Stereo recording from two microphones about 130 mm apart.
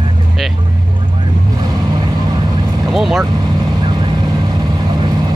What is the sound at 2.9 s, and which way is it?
Vehicle, centre (ahead or behind).